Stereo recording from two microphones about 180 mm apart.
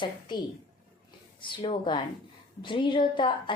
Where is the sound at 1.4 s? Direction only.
30° left (ahead or behind).